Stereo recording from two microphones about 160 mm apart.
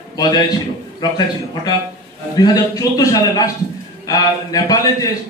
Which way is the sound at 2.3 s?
25° left (ahead or behind).